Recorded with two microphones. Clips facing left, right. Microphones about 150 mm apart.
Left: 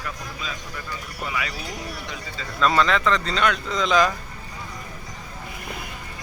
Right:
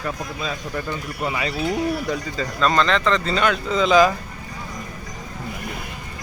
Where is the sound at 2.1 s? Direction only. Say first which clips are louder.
Right 11 dB; 45° right (ahead or behind).